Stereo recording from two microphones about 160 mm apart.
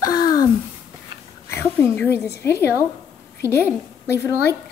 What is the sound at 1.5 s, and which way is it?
A woman's voice, 15° left (ahead or behind).